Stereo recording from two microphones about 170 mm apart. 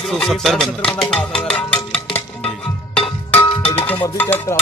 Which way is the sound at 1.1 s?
5° left (ahead or behind).